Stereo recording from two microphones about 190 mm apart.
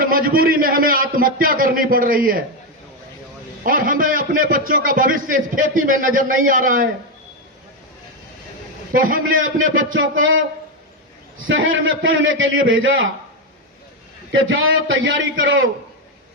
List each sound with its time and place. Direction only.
0.0 s a man's voice: 50° right (ahead or behind)
3.6 s a man's voice: 45° right (ahead or behind)
8.9 s a man's voice: 45° right (ahead or behind)
9.3 s a man's voice: 90° right
11.4 s a man's voice: 90° right
14.3 s a man's voice: 90° right